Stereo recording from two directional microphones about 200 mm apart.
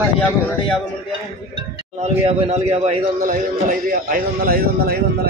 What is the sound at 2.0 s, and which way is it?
A man's voice, 30° right (ahead or behind).